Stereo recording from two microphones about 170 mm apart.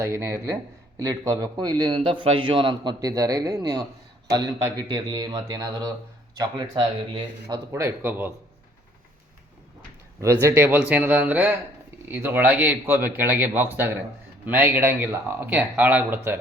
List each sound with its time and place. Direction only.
0.0 s a man's voice: 15° right (ahead or behind)
7.7 s speech: 15° right (ahead or behind)
10.2 s speech: 15° right (ahead or behind)